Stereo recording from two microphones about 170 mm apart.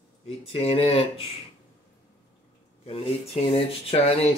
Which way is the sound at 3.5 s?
35° left (ahead or behind).